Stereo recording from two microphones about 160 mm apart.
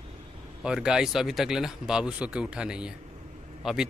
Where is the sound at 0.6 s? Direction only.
5° right (ahead or behind).